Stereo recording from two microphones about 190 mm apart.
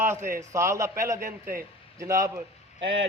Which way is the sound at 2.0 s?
15° right (ahead or behind).